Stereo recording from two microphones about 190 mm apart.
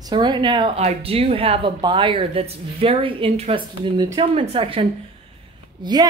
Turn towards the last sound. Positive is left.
turn(degrees=-20)  # may be behind; listen again after turning